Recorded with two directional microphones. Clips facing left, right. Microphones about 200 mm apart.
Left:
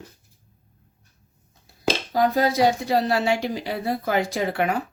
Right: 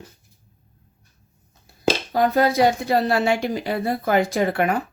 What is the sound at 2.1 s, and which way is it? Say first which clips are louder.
Speech: right 1 dB; 60° right (ahead or behind).